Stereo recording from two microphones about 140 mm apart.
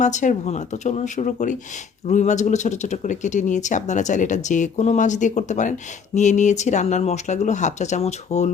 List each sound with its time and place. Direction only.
0.0 s speech: 60° left (ahead or behind)